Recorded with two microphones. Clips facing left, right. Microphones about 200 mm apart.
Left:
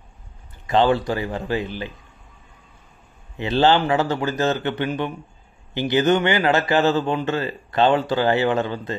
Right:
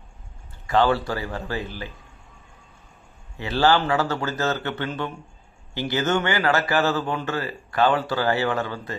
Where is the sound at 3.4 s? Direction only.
20° left (ahead or behind).